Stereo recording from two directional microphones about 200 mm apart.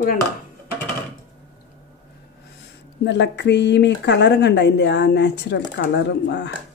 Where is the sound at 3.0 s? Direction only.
60° left (ahead or behind).